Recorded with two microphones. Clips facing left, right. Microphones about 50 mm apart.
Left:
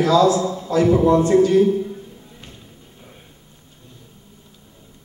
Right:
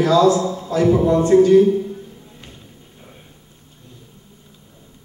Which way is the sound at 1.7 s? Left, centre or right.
Centre.